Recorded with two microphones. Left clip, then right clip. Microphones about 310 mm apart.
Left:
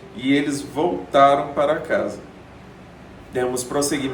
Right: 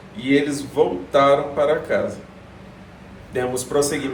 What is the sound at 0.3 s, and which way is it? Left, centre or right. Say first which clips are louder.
Speech: right 1 dB; centre.